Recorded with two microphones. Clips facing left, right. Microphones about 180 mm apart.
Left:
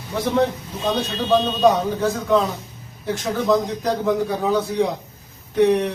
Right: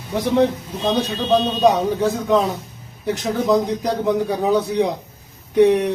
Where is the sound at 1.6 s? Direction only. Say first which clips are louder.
Right 1 dB; 15° right (ahead or behind).